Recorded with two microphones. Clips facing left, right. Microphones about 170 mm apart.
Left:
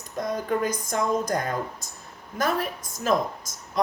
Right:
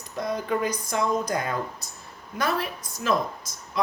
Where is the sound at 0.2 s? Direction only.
45° left (ahead or behind).